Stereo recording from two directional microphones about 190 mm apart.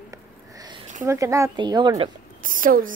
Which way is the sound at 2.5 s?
45° right (ahead or behind).